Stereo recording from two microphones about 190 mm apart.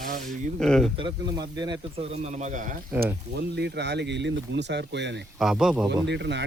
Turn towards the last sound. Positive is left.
turn(degrees=-65)  # may be behind; listen again after turning